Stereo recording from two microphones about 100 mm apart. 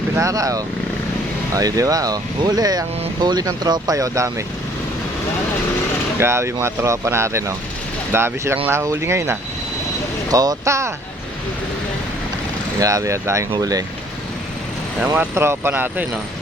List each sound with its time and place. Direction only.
0.2 s speech: 35° right (ahead or behind)
6.1 s speech: 25° right (ahead or behind)
10.2 s speech: 40° right (ahead or behind)
12.8 s speech: 30° right (ahead or behind)
15.0 s speech: 15° right (ahead or behind)